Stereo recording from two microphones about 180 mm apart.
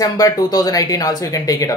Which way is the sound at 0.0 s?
20° left (ahead or behind).